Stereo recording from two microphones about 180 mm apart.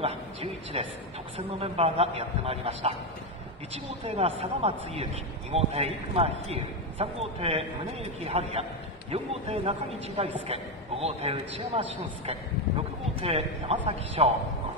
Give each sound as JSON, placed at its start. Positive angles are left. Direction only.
{"t": 0.0, "sound": "a man's voice", "side_deg": -35}